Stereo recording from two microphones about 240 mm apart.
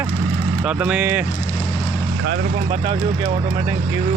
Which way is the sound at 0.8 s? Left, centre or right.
Centre.